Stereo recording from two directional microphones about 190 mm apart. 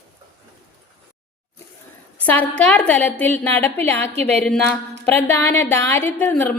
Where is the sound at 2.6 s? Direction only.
5° left (ahead or behind).